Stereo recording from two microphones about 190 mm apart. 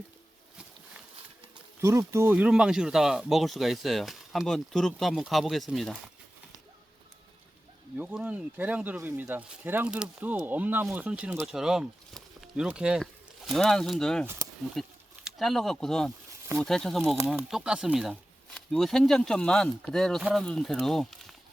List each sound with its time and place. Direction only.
1.8 s speech: 15° right (ahead or behind); by 6.0 s centre (ahead or behind)
7.9 s speech: 5° right (ahead or behind)